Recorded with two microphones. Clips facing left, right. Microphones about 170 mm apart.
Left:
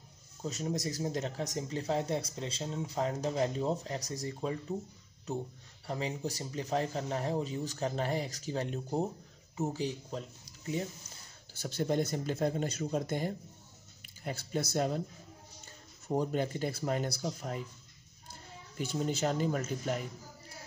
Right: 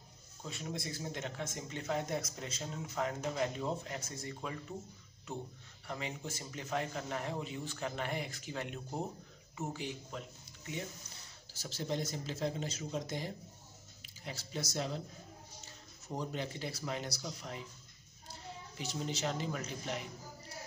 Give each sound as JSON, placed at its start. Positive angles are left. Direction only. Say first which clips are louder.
{"t": 0.4, "sound": "speech", "louder": "left 7 dB", "side_deg": 40}
{"t": 5.9, "sound": "speech", "louder": "left 6 dB", "side_deg": 35}
{"t": 11.6, "sound": "a woman's voice", "louder": "left 7 dB", "side_deg": 55}